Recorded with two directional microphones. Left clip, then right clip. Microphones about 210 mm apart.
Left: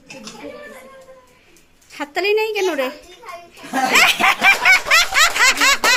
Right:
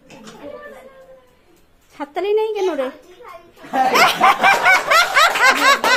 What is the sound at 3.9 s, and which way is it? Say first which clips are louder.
Snicker: even; 5° right (ahead or behind).